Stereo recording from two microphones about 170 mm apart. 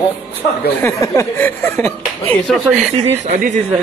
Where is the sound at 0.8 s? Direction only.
15° left (ahead or behind).